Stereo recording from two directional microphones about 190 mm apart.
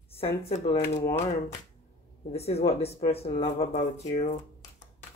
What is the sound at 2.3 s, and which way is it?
Speech, 35° left (ahead or behind).